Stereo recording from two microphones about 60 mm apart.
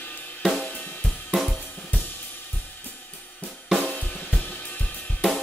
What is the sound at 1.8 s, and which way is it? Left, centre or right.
Cymbal, left.